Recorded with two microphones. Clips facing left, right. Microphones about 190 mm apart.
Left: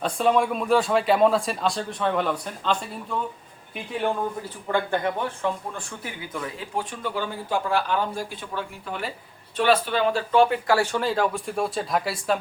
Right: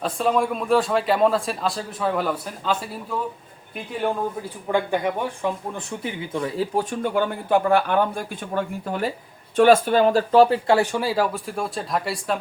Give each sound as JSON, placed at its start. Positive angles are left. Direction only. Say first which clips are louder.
{"t": 0.0, "sound": "speech", "louder": "even", "side_deg": 0}
{"t": 4.7, "sound": "speech", "louder": "right 2 dB", "side_deg": -10}
{"t": 10.8, "sound": "speech", "louder": "right 2 dB", "side_deg": -15}